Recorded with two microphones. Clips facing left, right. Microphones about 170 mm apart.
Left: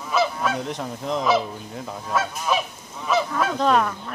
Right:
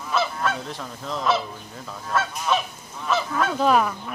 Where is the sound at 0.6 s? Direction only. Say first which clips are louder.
Left 5 dB; 20° left (ahead or behind).